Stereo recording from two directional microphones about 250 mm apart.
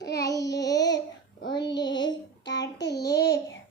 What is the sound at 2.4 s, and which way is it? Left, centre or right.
Child singing, left.